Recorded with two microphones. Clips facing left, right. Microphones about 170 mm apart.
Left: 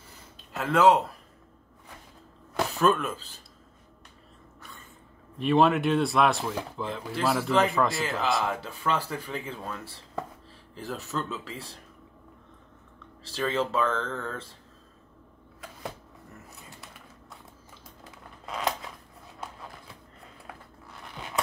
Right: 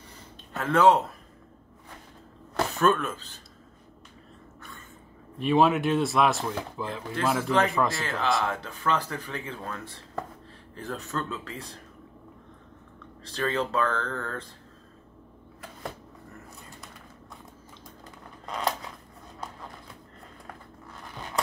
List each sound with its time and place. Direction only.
0.5 s speech: centre (ahead or behind)
2.6 s speech: centre (ahead or behind)
5.4 s speech: centre (ahead or behind)
13.2 s speech: 5° left (ahead or behind)
18.0 s a sound: centre (ahead or behind)